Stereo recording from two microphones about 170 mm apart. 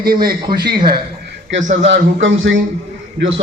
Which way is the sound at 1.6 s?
45° right (ahead or behind).